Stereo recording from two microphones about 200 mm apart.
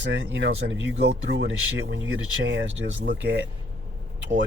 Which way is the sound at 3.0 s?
55° right (ahead or behind).